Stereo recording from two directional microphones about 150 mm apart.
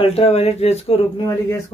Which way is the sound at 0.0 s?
40° left (ahead or behind).